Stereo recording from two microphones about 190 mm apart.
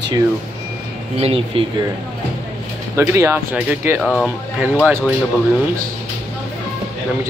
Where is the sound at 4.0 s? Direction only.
Centre (ahead or behind).